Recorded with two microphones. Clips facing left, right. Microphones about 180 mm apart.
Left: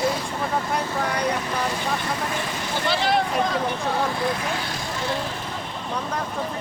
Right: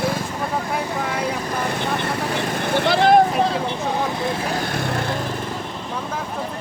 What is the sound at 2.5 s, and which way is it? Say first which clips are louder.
Vehicle: right 8 dB; 60° right (ahead or behind).